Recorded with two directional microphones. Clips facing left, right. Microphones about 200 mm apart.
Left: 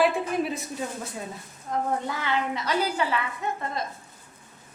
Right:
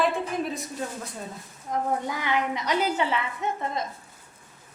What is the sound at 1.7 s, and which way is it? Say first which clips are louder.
A child's voice: even; 15° right (ahead or behind).